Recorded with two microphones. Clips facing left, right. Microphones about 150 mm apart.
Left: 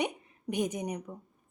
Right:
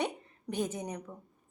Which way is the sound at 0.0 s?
15° left (ahead or behind).